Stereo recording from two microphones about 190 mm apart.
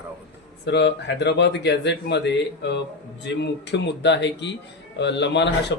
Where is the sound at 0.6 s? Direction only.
65° left (ahead or behind).